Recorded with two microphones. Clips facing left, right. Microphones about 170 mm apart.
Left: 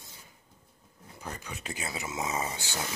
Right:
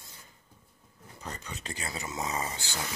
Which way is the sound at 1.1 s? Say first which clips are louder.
Left 1 dB; 5° left (ahead or behind).